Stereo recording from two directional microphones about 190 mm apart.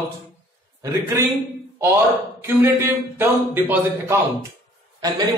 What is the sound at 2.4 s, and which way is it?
A man's voice, 10° right (ahead or behind).